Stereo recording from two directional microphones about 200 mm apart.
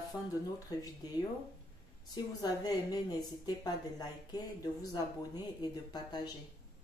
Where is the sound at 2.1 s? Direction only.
20° left (ahead or behind).